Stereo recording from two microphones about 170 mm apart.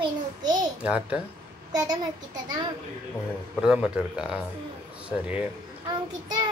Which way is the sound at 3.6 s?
5° right (ahead or behind).